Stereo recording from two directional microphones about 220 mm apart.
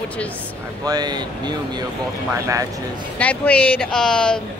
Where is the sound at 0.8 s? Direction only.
20° right (ahead or behind).